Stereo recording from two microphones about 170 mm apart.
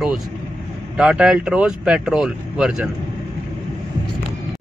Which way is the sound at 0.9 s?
5° right (ahead or behind).